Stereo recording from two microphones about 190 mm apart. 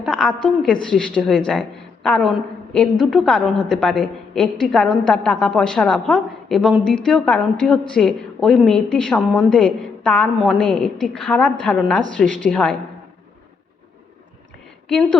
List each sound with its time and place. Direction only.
0.0 s a woman's voice: 5° left (ahead or behind)
14.8 s a woman's voice: 5° left (ahead or behind)